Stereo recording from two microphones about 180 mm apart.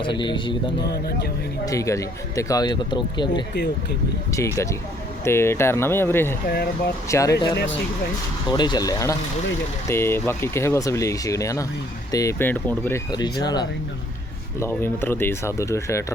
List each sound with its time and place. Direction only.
0.0 s a man's voice: 25° left (ahead or behind)
1.6 s a man's voice: 15° left (ahead or behind)
6.5 s speech: 60° left (ahead or behind)
7.1 s speech: 15° left (ahead or behind)
8.4 s a man's voice: 25° left (ahead or behind)
14.6 s speech: 10° left (ahead or behind)